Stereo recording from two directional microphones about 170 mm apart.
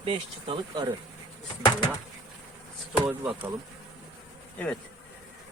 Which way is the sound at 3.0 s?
15° right (ahead or behind).